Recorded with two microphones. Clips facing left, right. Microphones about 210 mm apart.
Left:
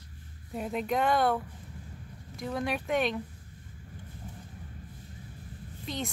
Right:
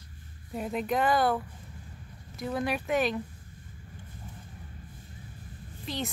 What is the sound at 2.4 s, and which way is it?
Speech, 5° right (ahead or behind).